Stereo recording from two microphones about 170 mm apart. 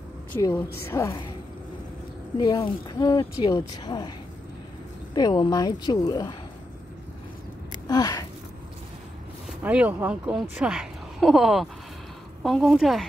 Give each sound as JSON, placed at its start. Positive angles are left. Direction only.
{"t": 0.4, "sound": "a woman's voice", "side_deg": 15}
{"t": 2.3, "sound": "speech", "side_deg": 25}
{"t": 5.1, "sound": "speech", "side_deg": 25}
{"t": 7.9, "sound": "a sound", "side_deg": 20}
{"t": 9.5, "sound": "a woman's voice", "side_deg": -5}